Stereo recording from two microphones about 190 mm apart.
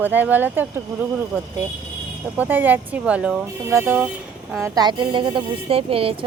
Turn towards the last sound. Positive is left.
turn(degrees=-30)  # may be behind; listen again after turning